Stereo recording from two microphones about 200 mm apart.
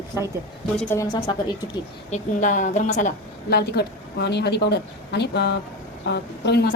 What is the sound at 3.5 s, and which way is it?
A woman's voice, 55° left (ahead or behind).